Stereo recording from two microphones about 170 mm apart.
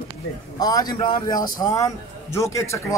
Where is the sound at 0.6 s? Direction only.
20° left (ahead or behind).